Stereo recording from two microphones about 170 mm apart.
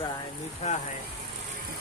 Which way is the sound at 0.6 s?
40° left (ahead or behind).